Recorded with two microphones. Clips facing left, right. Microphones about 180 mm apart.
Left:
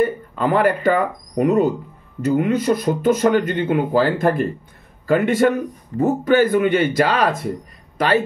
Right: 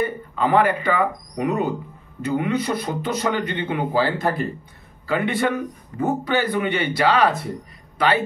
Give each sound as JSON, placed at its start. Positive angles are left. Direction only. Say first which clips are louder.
{"t": 0.0, "sound": "speech", "louder": "left 4 dB", "side_deg": 45}